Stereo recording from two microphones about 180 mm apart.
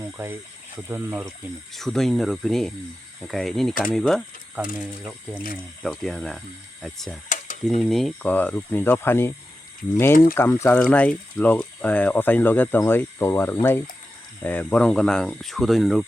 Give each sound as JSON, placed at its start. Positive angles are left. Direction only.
{"t": 0.0, "sound": "speech", "side_deg": -10}
{"t": 1.7, "sound": "speech", "side_deg": 0}
{"t": 7.3, "sound": "a sound", "side_deg": 45}
{"t": 7.6, "sound": "speech", "side_deg": 0}
{"t": 10.3, "sound": "speech", "side_deg": 15}